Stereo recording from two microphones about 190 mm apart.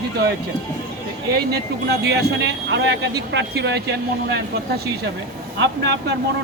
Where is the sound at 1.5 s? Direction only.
60° right (ahead or behind).